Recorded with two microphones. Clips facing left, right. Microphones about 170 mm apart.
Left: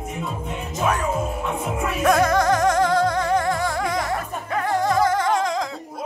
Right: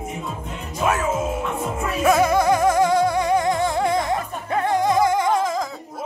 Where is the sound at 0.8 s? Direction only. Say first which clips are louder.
Right 1 dB; 5° right (ahead or behind).